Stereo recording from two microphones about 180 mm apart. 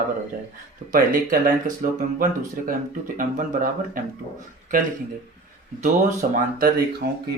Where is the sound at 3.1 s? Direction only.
45° right (ahead or behind).